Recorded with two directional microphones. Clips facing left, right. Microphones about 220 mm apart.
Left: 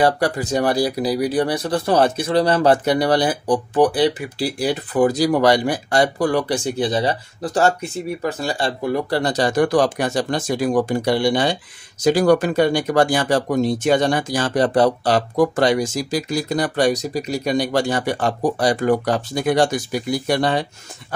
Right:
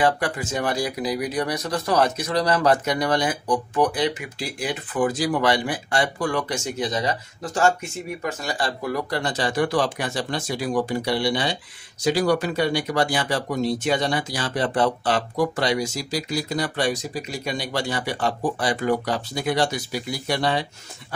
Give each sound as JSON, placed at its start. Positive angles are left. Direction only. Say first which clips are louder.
{"t": 0.0, "sound": "speech", "louder": "left 4 dB", "side_deg": 35}
{"t": 9.2, "sound": "speech", "louder": "left 6 dB", "side_deg": 40}